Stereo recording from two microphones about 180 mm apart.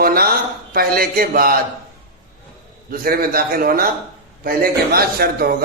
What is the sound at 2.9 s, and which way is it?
A man's voice, 55° right (ahead or behind).